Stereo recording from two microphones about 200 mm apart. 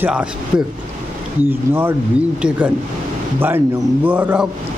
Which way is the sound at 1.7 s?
10° right (ahead or behind).